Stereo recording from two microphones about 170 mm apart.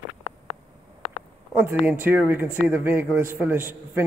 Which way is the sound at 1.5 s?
10° right (ahead or behind).